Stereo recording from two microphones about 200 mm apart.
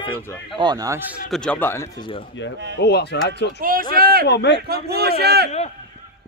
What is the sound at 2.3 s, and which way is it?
Speech, 65° left (ahead or behind).